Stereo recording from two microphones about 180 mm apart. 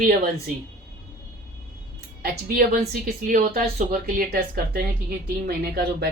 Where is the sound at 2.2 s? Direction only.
60° right (ahead or behind).